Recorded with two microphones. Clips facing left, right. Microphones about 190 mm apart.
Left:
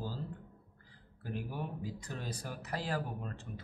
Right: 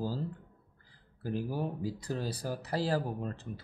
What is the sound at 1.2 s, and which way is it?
Speech, 35° right (ahead or behind).